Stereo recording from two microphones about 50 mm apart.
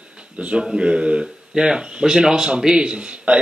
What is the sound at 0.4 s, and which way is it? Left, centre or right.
Speech, right.